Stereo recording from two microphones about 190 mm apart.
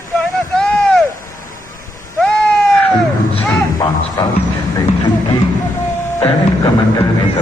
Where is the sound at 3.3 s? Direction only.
25° left (ahead or behind).